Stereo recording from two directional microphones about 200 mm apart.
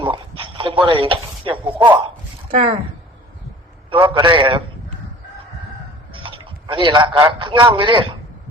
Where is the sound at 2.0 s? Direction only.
30° right (ahead or behind).